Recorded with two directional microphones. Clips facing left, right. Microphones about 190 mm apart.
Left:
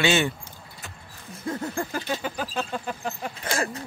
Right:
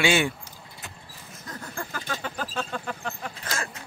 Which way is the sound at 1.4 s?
25° left (ahead or behind).